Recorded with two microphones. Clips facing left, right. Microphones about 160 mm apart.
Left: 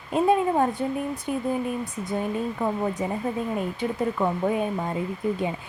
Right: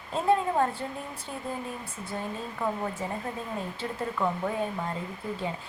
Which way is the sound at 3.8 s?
15° left (ahead or behind).